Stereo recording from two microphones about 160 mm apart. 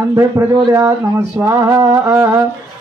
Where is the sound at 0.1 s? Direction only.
20° right (ahead or behind).